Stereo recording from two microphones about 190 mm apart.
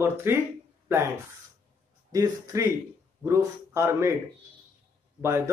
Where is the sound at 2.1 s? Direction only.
20° right (ahead or behind).